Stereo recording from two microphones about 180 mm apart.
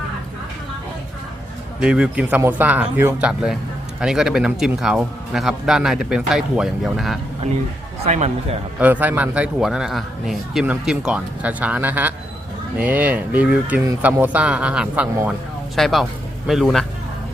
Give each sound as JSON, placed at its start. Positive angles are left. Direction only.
{"t": 1.8, "sound": "a man's voice", "side_deg": -5}
{"t": 8.0, "sound": "speech", "side_deg": -35}
{"t": 8.8, "sound": "a man's voice", "side_deg": -10}